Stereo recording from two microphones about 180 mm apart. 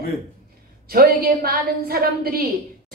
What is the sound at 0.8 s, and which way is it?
A woman's voice, 55° right (ahead or behind).